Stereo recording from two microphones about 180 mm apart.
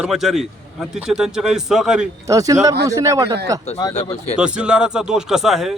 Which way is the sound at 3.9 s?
35° left (ahead or behind).